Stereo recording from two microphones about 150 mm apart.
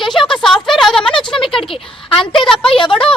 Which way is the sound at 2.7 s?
35° left (ahead or behind).